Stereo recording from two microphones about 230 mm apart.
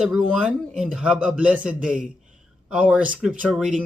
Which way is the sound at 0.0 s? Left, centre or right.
Centre.